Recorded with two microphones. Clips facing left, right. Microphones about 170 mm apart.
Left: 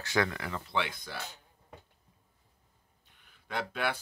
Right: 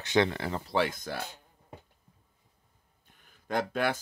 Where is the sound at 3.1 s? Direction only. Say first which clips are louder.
Right 6 dB; 45° right (ahead or behind).